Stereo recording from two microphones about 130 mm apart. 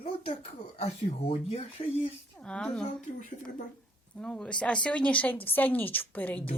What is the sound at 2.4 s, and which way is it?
Speech, 5° left (ahead or behind).